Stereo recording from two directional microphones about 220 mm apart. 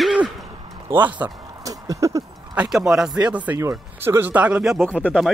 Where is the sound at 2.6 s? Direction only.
Centre (ahead or behind).